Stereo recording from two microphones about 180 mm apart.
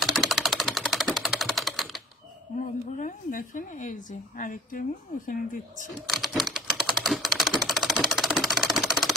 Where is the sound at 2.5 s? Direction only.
45° left (ahead or behind).